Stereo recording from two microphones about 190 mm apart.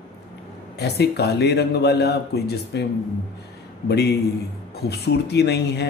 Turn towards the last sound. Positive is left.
turn(degrees=60)  # may be behind; listen again after turning